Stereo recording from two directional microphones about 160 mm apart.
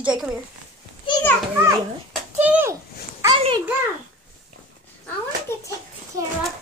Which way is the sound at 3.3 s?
35° right (ahead or behind).